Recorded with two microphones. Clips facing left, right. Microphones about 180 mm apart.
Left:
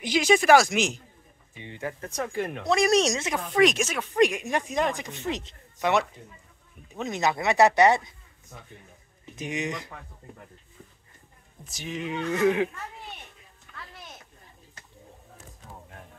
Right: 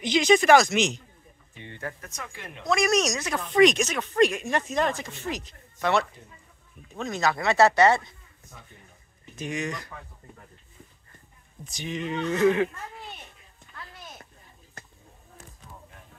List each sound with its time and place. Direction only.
0.0 s speech: 10° left (ahead or behind)
2.0 s speech: 35° left (ahead or behind)
3.5 s speech: 5° left (ahead or behind)
9.3 s speech: 20° left (ahead or behind)
11.6 s speech: 5° left (ahead or behind)